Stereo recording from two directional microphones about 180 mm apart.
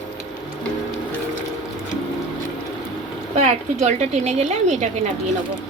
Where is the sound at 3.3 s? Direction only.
40° right (ahead or behind).